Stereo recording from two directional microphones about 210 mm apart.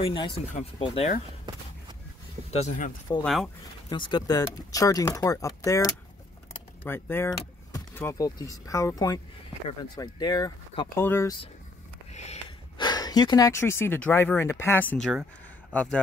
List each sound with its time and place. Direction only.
0.0 s speech: 25° left (ahead or behind)
2.5 s speech: 35° left (ahead or behind)
3.9 s speech: 20° left (ahead or behind)
12.1 s a man's voice: 30° left (ahead or behind); by 16.0 s 5° left (ahead or behind)